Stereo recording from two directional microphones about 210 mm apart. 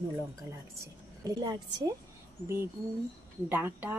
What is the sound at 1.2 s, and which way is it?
Speech, 15° right (ahead or behind).